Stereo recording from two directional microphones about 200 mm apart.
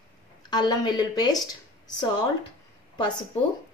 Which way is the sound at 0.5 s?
20° left (ahead or behind).